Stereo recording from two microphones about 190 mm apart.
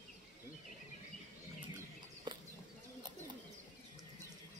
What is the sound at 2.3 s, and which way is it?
Chicken, 25° right (ahead or behind).